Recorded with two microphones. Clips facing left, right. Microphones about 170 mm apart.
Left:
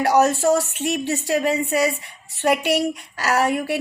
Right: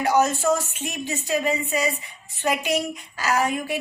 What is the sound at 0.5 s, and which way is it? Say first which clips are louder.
A woman's voice: left 5 dB; 70° left (ahead or behind).